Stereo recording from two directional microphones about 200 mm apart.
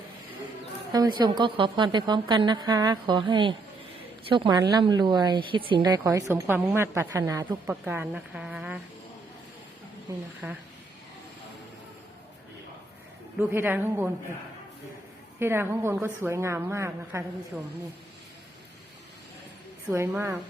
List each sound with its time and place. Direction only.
0.9 s a woman's voice: 20° right (ahead or behind)
13.5 s a woman's voice: 10° right (ahead or behind)
15.4 s a woman's voice: 10° right (ahead or behind)
19.9 s a woman's voice: 10° right (ahead or behind)